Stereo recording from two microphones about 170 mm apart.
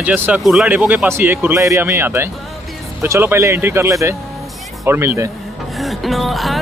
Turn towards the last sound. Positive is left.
turn(degrees=0)  # may be behind; listen again after turning